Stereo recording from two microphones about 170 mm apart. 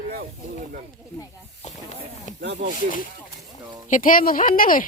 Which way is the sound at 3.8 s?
50° left (ahead or behind).